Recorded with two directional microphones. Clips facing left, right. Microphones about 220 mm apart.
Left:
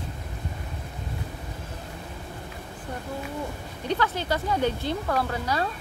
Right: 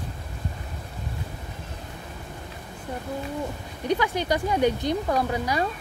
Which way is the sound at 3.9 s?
15° right (ahead or behind).